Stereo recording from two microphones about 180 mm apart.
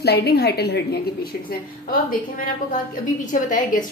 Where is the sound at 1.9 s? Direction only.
50° left (ahead or behind).